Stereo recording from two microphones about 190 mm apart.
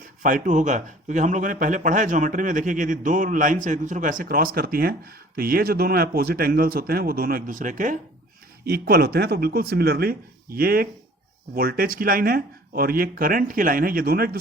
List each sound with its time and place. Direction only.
0.2 s a man's voice: 45° right (ahead or behind)
8.6 s a man's voice: 55° right (ahead or behind)